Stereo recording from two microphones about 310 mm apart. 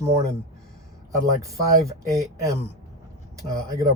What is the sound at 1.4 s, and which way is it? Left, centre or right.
Speech, centre.